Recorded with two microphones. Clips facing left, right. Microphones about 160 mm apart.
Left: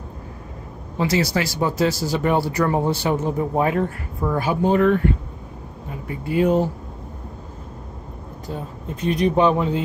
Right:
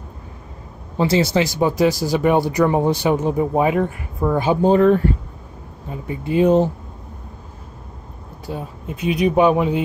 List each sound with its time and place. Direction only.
0.9 s speech: 25° right (ahead or behind)
6.0 s speech: 20° right (ahead or behind)
8.5 s speech: 10° right (ahead or behind)